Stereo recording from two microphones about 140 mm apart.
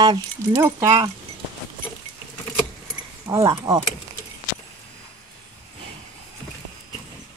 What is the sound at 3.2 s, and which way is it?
Speech, 25° right (ahead or behind).